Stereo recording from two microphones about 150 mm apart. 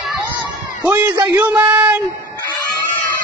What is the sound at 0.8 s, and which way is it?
Speech, 10° right (ahead or behind).